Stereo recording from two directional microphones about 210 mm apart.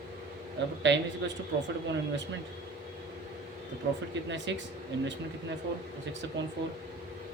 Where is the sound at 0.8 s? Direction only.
60° right (ahead or behind).